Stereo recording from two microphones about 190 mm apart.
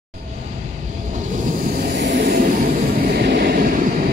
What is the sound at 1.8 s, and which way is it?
Vehicle, 60° right (ahead or behind).